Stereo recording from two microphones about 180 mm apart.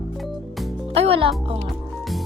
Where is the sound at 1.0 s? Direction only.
30° right (ahead or behind).